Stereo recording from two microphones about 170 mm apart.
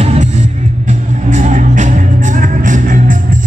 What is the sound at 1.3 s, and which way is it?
Music, 45° right (ahead or behind).